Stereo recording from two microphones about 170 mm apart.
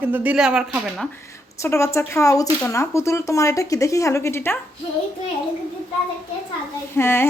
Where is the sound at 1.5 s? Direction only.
15° left (ahead or behind).